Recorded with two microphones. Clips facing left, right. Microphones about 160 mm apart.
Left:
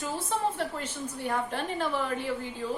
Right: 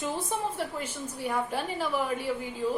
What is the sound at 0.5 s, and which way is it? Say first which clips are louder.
A woman's voice: even; 10° right (ahead or behind).